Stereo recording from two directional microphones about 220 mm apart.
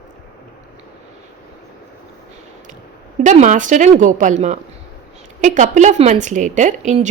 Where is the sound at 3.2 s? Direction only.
35° right (ahead or behind).